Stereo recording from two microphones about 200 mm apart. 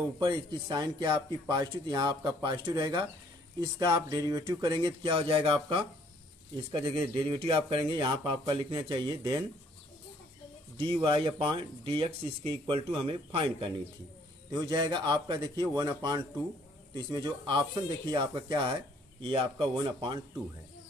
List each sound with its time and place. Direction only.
0.2 s speech: 20° right (ahead or behind)
10.8 s speech: 25° right (ahead or behind)